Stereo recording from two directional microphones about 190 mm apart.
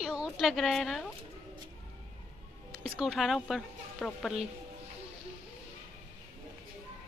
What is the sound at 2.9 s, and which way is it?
Speech, centre (ahead or behind).